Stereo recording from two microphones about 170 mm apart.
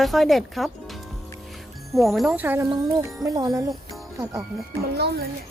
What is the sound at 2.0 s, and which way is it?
Speech, centre (ahead or behind).